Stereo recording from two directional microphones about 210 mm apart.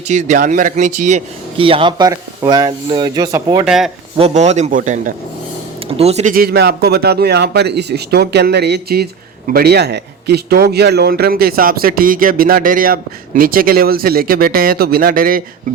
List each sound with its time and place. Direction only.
0.1 s speech: 35° right (ahead or behind); by 3.7 s 20° right (ahead or behind)
3.7 s speech: centre (ahead or behind)
4.2 s a man's voice: 30° right (ahead or behind)